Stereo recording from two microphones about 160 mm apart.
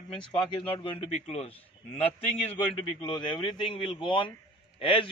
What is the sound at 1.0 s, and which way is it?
Speech, 45° left (ahead or behind).